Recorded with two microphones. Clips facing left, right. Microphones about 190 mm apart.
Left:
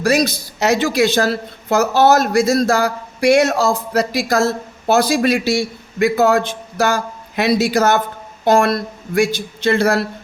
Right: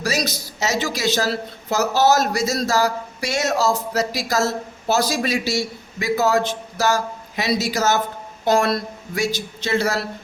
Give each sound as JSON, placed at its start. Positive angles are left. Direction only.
{"t": 0.0, "sound": "a man's voice", "side_deg": 55}